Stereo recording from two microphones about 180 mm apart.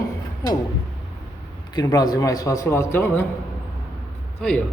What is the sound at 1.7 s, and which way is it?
A man's voice, 20° left (ahead or behind).